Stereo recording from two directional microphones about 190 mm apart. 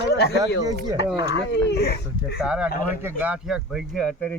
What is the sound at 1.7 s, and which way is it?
Speech, 55° left (ahead or behind).